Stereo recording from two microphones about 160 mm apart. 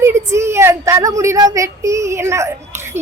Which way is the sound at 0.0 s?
15° right (ahead or behind).